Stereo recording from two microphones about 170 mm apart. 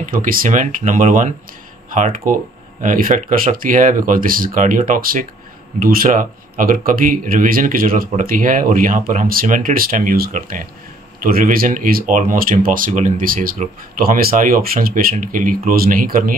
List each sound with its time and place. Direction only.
0.1 s speech: 55° right (ahead or behind)